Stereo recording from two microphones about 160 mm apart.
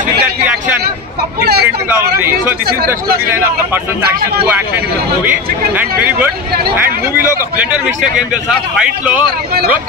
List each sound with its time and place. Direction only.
1.4 s speech: 85° right
3.3 s speech: 15° right (ahead or behind)
5.8 s speech: 10° right (ahead or behind)
8.5 s speech: 10° right (ahead or behind)